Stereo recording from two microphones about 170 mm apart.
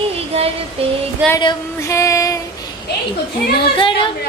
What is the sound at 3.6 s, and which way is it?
Speech, 30° left (ahead or behind).